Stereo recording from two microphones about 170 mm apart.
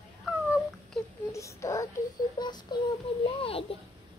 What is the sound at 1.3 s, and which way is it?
Speech, 20° left (ahead or behind).